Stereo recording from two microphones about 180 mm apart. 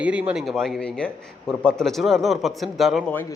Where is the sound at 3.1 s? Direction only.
10° left (ahead or behind).